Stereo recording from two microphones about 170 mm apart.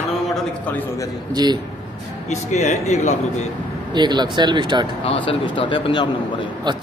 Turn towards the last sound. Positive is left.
turn(degrees=-25)  # may be behind; listen again after turning